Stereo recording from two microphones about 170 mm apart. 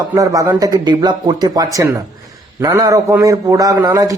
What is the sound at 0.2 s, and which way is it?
A man's voice, 20° right (ahead or behind).